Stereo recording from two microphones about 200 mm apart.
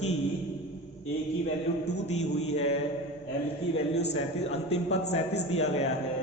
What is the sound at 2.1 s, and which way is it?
Speech, 35° left (ahead or behind).